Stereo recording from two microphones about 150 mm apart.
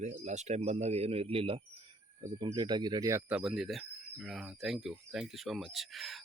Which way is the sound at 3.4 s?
Centre (ahead or behind).